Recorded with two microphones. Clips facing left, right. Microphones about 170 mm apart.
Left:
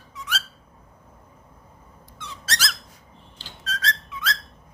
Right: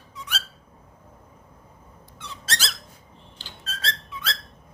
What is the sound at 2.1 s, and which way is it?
Squeak, 30° right (ahead or behind).